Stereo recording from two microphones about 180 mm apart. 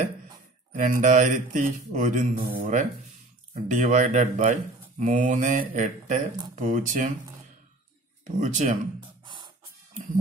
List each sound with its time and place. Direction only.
0.7 s speech: 45° right (ahead or behind)
8.4 s speech: 45° right (ahead or behind)
9.2 s music: 25° right (ahead or behind)